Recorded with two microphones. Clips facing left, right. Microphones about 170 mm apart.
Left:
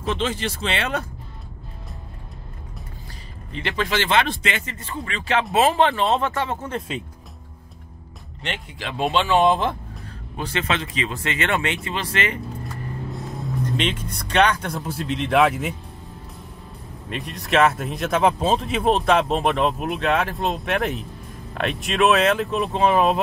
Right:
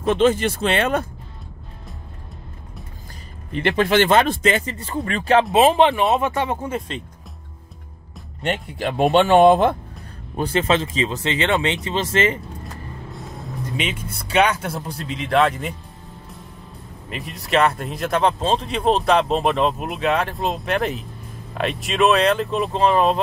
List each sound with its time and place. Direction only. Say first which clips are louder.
0.0 s speech: right 8 dB; 50° right (ahead or behind)
3.5 s speech: right 7 dB; 55° right (ahead or behind); by 5.1 s 35° right (ahead or behind)
5.5 s speech: even; 20° right (ahead or behind)
8.4 s speech: right 8 dB; 45° right (ahead or behind)
10.6 s speech: right 5 dB; 30° right (ahead or behind)
13.1 s speech: left 3 dB; centre (ahead or behind)
17.1 s speech: right 1 dB; centre (ahead or behind)